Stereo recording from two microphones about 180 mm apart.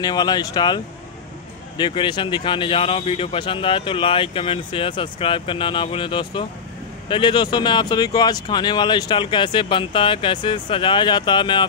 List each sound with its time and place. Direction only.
0.0 s speech: 20° left (ahead or behind)